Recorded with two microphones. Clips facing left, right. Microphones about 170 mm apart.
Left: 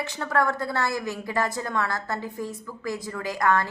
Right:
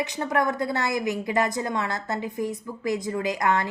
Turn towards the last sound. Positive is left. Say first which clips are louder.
# even
turn(degrees=-20)  # may be behind; listen again after turning